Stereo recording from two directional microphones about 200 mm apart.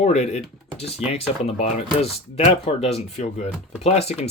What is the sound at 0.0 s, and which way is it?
Speech, 35° left (ahead or behind).